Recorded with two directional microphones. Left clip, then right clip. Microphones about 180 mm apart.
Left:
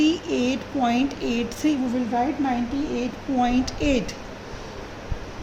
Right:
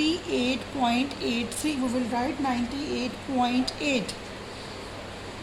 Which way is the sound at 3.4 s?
60° left (ahead or behind).